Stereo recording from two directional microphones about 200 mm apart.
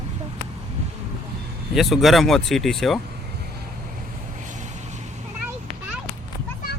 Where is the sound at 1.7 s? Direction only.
Centre (ahead or behind).